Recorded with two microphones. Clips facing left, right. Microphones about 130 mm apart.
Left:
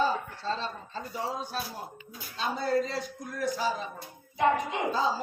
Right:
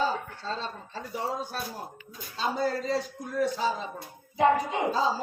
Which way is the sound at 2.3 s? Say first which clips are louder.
Even; 35° right (ahead or behind).